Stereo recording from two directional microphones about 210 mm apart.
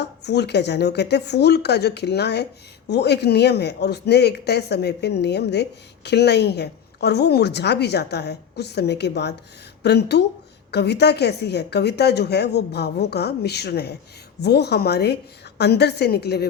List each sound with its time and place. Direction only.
0.0 s speech: 55° left (ahead or behind)